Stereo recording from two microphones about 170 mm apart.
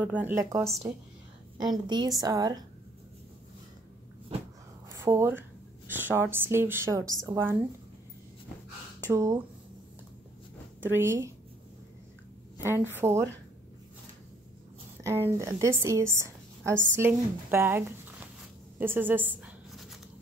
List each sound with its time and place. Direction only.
0.0 s a woman's voice: 10° right (ahead or behind)
4.8 s a sound: 15° right (ahead or behind)
5.9 s a woman's voice: 10° right (ahead or behind)
9.1 s a woman's voice: 20° right (ahead or behind)
10.8 s a woman's voice: 15° right (ahead or behind)
12.6 s a woman's voice: 15° right (ahead or behind)
15.3 s a woman's voice: 20° right (ahead or behind)